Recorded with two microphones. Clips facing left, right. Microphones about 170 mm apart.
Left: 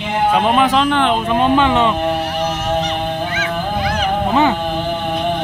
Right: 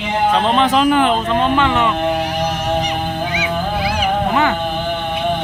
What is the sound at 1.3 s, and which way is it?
Speech, 15° left (ahead or behind).